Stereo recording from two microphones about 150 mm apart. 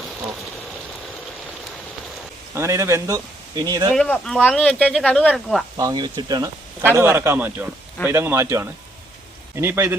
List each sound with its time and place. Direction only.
2.6 s speech: 20° right (ahead or behind)
3.9 s speech: 5° left (ahead or behind)
5.7 s speech: 30° right (ahead or behind)
6.8 s speech: 15° right (ahead or behind)